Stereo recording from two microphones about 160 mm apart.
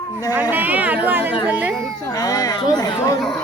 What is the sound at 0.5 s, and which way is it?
Chatter, 10° right (ahead or behind).